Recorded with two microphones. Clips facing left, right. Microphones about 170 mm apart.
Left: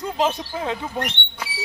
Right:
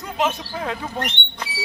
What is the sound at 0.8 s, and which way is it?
Speech, 10° left (ahead or behind).